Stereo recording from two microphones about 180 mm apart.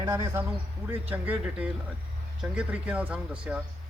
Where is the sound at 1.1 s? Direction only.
10° right (ahead or behind).